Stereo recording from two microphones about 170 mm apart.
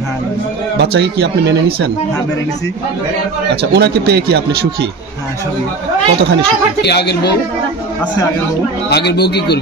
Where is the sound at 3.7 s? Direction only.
70° right (ahead or behind).